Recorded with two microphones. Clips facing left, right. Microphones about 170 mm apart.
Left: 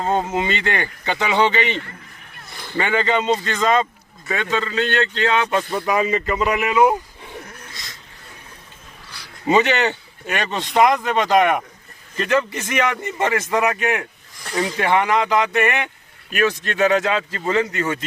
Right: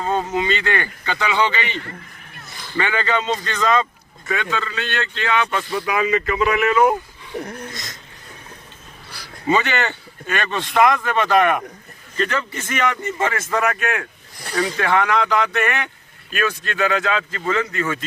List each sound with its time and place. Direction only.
0.0 s speech: 25° left (ahead or behind)
6.7 s a man's voice: 15° left (ahead or behind)
7.7 s speech: 45° right (ahead or behind)
9.5 s speech: 20° left (ahead or behind)
12.7 s a man's voice: 15° left (ahead or behind)